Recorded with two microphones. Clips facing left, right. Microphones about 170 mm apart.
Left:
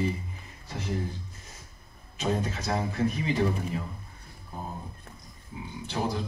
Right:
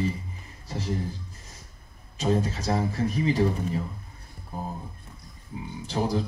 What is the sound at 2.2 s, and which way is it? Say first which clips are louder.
Speech: right 4 dB; 35° right (ahead or behind).